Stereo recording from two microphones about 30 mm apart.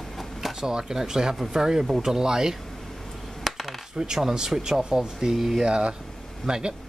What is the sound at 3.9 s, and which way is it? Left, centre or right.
Speech, centre.